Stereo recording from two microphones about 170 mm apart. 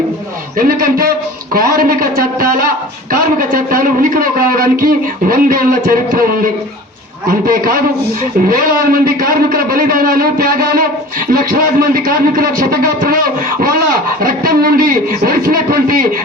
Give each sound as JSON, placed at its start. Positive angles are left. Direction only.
{"t": 0.6, "sound": "a man's voice", "side_deg": -60}
{"t": 14.2, "sound": "a man's voice", "side_deg": -60}